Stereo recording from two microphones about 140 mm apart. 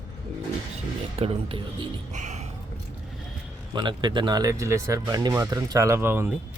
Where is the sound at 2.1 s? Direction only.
55° right (ahead or behind).